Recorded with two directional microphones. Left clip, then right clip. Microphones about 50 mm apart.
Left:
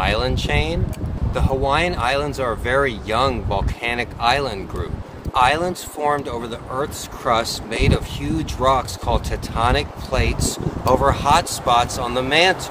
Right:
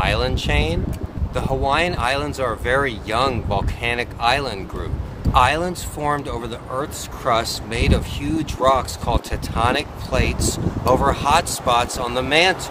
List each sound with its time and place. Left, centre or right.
0.0 s speech: right
10.8 s speech: right